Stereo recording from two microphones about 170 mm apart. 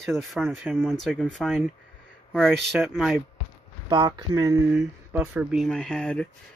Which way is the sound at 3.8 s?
25° right (ahead or behind).